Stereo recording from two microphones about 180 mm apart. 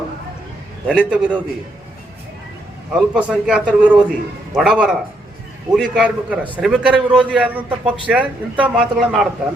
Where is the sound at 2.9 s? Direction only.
5° right (ahead or behind).